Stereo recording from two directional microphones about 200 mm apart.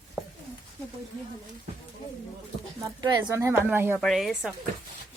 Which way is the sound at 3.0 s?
15° right (ahead or behind).